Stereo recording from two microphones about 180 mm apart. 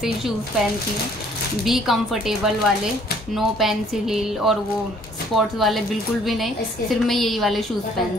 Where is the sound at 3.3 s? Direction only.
Centre (ahead or behind).